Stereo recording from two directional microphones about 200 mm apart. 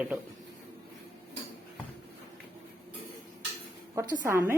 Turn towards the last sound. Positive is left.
turn(degrees=-15)  # may be behind; listen again after turning